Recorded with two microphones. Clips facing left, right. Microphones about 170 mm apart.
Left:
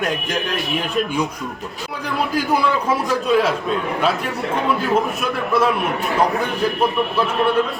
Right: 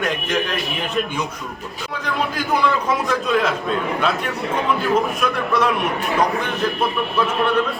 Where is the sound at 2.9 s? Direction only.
10° left (ahead or behind).